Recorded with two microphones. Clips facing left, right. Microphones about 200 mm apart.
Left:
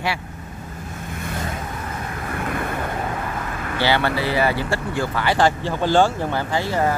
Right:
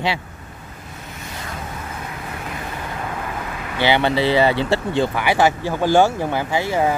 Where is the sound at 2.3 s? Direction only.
55° left (ahead or behind).